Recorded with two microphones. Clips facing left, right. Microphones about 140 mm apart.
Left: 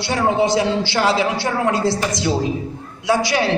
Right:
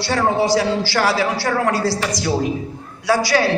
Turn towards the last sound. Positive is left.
turn(degrees=20)  # may be behind; listen again after turning